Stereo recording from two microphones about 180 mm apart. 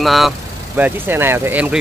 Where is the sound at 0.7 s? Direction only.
10° right (ahead or behind).